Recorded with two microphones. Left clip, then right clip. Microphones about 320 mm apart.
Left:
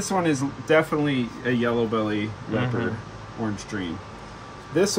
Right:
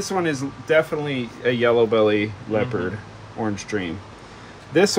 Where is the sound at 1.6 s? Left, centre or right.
Centre.